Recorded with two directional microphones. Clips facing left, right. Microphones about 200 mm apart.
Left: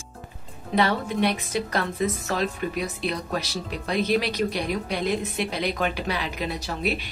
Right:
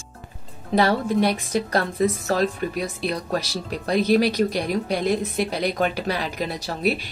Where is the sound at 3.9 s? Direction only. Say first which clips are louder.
Right 5 dB; 40° right (ahead or behind).